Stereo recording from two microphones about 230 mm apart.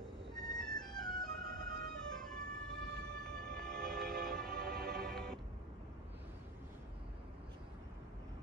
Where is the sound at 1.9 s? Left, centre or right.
Centre.